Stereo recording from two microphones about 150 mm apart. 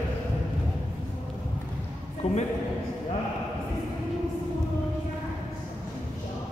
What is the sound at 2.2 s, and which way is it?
Speech, 40° left (ahead or behind).